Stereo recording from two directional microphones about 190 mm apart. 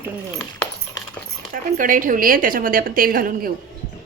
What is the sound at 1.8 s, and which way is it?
Speech, 45° right (ahead or behind).